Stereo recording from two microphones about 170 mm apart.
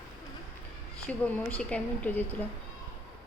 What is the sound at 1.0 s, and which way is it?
A woman's voice, 10° left (ahead or behind).